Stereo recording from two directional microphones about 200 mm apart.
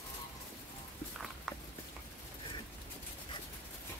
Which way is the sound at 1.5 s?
Centre (ahead or behind).